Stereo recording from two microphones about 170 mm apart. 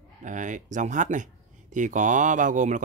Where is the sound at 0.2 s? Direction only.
50° right (ahead or behind).